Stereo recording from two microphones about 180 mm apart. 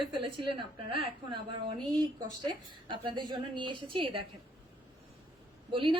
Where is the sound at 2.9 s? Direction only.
25° right (ahead or behind).